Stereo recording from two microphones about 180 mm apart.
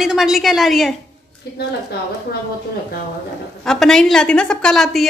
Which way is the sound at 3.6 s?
5° left (ahead or behind).